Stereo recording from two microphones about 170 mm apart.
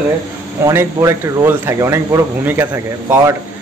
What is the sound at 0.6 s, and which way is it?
Speech, 15° right (ahead or behind).